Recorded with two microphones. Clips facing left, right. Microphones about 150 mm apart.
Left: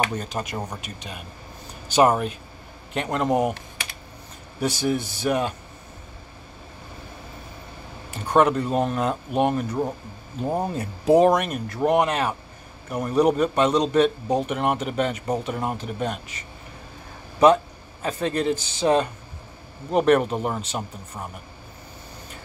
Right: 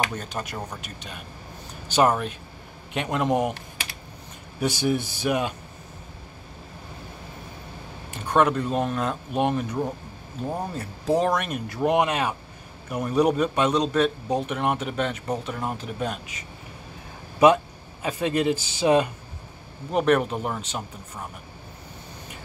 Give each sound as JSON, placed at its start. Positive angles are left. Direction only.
{"t": 0.1, "sound": "a man's voice", "side_deg": 0}
{"t": 2.0, "sound": "a man's voice", "side_deg": 5}
{"t": 4.6, "sound": "a man's voice", "side_deg": 0}
{"t": 8.4, "sound": "a man's voice", "side_deg": 5}
{"t": 10.4, "sound": "speech", "side_deg": 20}
{"t": 11.3, "sound": "a man's voice", "side_deg": 0}
{"t": 18.0, "sound": "a man's voice", "side_deg": -10}